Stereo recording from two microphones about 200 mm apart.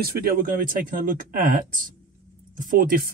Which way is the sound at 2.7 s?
45° right (ahead or behind).